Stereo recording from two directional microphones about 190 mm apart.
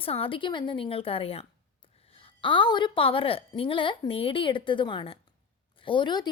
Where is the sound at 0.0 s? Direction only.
30° left (ahead or behind).